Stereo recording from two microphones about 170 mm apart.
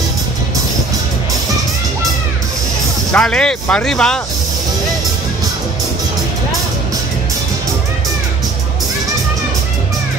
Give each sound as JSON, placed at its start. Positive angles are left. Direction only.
{"t": 3.1, "sound": "speech", "side_deg": 5}